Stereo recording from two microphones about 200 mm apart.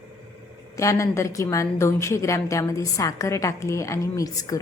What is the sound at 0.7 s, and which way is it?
A woman's voice, 15° left (ahead or behind).